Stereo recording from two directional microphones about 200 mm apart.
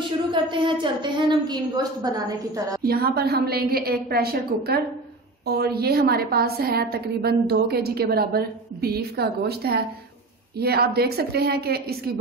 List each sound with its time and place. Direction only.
0.3 s a woman's voice: 25° right (ahead or behind)
2.8 s a woman's voice: 50° right (ahead or behind)